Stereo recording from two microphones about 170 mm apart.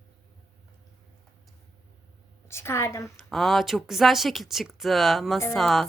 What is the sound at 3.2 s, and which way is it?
A woman's voice, centre (ahead or behind).